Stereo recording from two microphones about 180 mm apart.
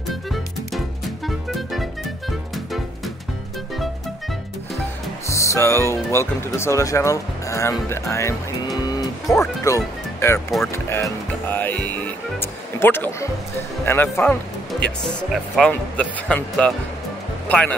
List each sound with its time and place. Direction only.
0.1 s music: centre (ahead or behind)
5.3 s music: 15° left (ahead or behind)
6.1 s speech: 15° left (ahead or behind)